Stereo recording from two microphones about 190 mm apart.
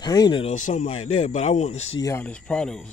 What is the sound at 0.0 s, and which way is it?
Speech, 20° left (ahead or behind).